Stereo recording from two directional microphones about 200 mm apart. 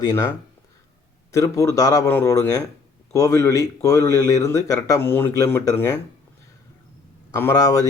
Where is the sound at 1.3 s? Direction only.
15° left (ahead or behind).